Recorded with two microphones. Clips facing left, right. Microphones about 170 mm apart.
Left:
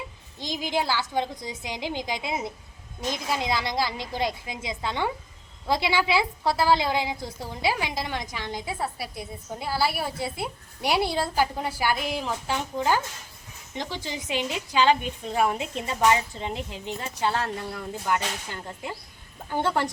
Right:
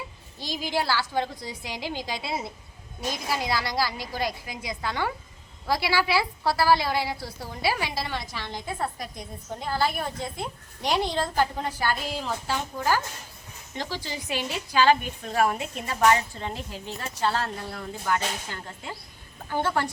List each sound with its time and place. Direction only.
0.3 s a woman's voice: 20° left (ahead or behind)
19.5 s a woman's voice: 15° left (ahead or behind)